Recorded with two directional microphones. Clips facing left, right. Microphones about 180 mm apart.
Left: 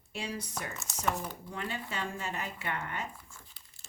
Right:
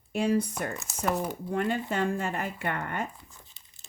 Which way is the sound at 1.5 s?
50° right (ahead or behind).